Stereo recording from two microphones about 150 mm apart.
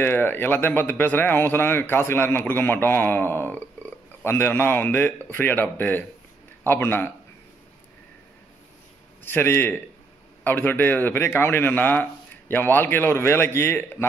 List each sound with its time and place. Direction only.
0.0 s speech: 15° left (ahead or behind)
9.2 s speech: 15° left (ahead or behind)